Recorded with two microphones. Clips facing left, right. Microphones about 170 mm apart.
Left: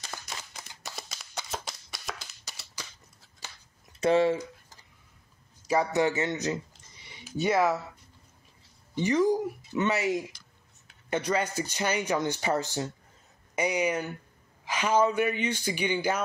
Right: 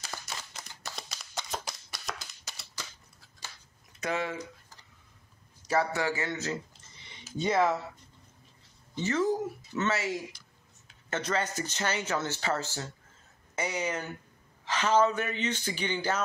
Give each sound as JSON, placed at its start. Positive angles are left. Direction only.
{"t": 0.0, "sound": "a sound", "side_deg": 0}
{"t": 1.7, "sound": "shuffling cards", "side_deg": 0}
{"t": 4.0, "sound": "speech", "side_deg": 30}
{"t": 5.7, "sound": "speech", "side_deg": 20}
{"t": 8.9, "sound": "speech", "side_deg": 15}